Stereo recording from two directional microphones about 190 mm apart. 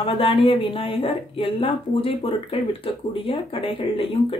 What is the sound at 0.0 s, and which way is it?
Speech, 30° left (ahead or behind).